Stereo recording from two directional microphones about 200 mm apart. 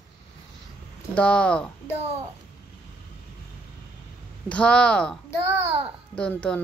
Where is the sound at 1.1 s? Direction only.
5° left (ahead or behind).